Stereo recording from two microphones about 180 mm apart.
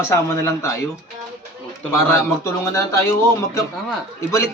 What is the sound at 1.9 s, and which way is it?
Speech, 15° left (ahead or behind).